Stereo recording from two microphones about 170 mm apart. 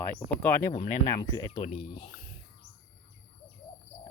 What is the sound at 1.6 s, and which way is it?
Speech, 35° left (ahead or behind).